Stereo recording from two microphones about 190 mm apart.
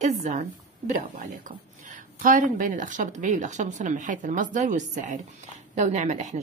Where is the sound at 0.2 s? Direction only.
40° right (ahead or behind).